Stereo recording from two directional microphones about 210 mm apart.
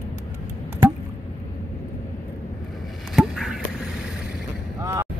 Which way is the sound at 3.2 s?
Centre (ahead or behind).